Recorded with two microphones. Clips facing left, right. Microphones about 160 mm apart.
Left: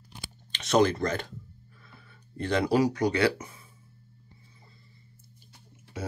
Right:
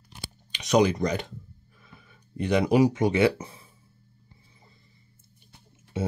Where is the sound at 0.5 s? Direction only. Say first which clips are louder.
Right 1 dB; 15° right (ahead or behind); by 3.6 s 30° right (ahead or behind).